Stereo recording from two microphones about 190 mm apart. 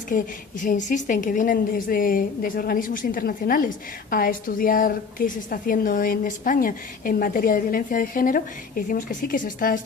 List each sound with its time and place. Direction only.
0.1 s a woman's voice: 45° left (ahead or behind)